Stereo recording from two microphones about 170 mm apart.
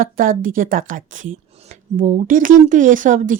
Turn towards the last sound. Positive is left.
turn(degrees=-50)  # may be behind; listen again after turning